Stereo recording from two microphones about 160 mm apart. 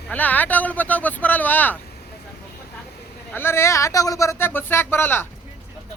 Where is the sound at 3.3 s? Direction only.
15° left (ahead or behind).